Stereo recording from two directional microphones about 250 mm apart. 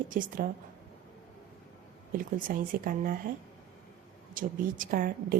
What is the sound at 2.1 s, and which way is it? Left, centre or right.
A woman's voice, right.